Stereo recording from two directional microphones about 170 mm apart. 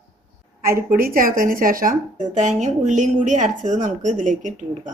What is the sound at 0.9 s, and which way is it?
Speech, 55° right (ahead or behind).